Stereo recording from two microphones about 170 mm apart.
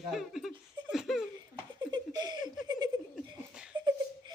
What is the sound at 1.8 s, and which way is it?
Laughter, 25° right (ahead or behind).